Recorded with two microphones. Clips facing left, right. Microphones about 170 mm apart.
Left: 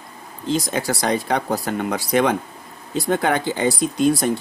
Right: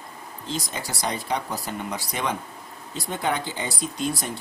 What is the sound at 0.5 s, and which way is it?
Speech, 70° left (ahead or behind).